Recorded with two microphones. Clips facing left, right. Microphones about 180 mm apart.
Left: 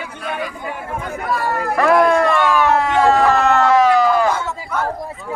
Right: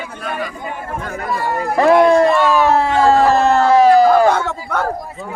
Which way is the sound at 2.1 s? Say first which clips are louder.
Right 3 dB; 25° right (ahead or behind).